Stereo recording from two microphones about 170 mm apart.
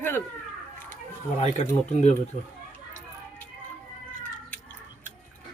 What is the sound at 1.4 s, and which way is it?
Speech, 40° left (ahead or behind).